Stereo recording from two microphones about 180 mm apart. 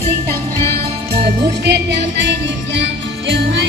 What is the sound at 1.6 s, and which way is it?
Music, 70° right (ahead or behind).